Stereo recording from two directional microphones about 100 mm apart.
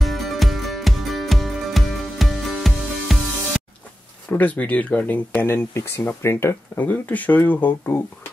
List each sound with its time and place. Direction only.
0.0 s music: centre (ahead or behind)
4.3 s speech: 15° left (ahead or behind)